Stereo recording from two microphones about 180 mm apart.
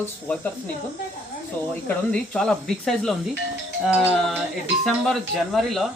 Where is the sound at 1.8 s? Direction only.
5° left (ahead or behind).